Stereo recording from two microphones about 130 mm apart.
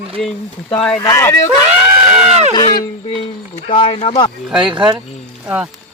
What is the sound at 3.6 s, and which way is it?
Speech, 40° left (ahead or behind).